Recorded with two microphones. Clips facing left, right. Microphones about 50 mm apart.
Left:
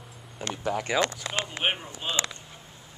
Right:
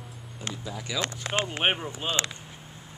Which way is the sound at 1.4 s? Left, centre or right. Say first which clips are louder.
Right 2 dB; right.